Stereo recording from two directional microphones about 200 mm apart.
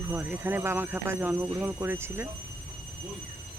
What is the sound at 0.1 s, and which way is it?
Speech, 10° right (ahead or behind).